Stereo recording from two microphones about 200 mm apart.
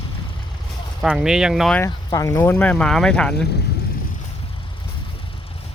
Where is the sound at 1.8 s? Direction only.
15° left (ahead or behind).